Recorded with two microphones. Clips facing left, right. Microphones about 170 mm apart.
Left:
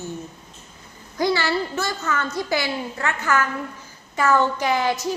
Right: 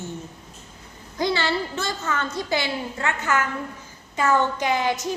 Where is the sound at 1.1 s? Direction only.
20° right (ahead or behind).